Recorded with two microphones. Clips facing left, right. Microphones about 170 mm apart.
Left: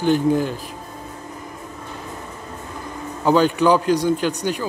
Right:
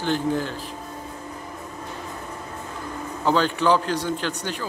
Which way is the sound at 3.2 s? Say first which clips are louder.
Left 5 dB; 10° left (ahead or behind).